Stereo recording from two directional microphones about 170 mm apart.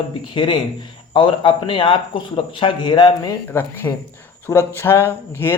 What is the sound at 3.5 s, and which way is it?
Speech, 15° left (ahead or behind).